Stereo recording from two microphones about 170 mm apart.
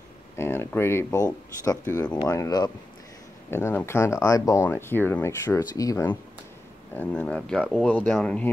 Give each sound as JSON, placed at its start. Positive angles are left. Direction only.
{"t": 0.4, "sound": "speech", "side_deg": 15}